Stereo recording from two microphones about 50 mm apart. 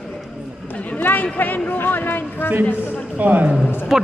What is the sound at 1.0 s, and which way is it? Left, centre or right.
Speech, left.